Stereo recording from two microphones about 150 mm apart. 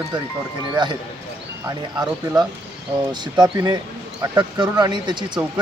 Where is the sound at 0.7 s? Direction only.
30° right (ahead or behind).